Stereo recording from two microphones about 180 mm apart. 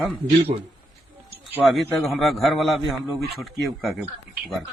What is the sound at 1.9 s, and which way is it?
A man's voice, centre (ahead or behind).